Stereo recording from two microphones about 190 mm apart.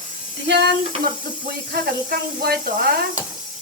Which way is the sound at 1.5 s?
55° right (ahead or behind).